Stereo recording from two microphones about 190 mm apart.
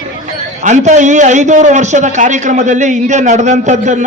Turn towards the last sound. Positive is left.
turn(degrees=-40)  # may be behind; listen again after turning